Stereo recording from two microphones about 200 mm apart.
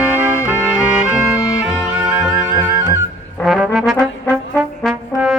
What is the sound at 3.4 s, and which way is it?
Brass instrument, centre (ahead or behind).